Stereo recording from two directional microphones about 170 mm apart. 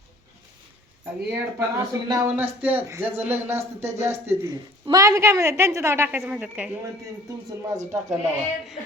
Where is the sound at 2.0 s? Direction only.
25° right (ahead or behind).